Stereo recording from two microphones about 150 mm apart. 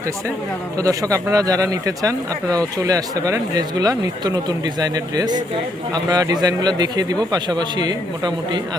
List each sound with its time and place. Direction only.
0.8 s speech: 20° right (ahead or behind)